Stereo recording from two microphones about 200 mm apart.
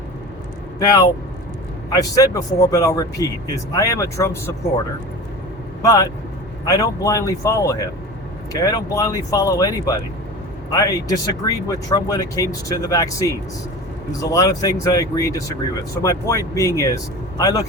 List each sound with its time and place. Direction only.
0.8 s a man's voice: 20° left (ahead or behind)
5.8 s a man's voice: 15° left (ahead or behind)